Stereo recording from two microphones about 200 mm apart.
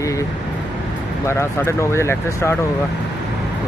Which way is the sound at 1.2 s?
15° left (ahead or behind).